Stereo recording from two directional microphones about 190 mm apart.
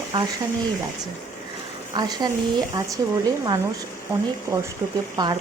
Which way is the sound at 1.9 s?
20° right (ahead or behind).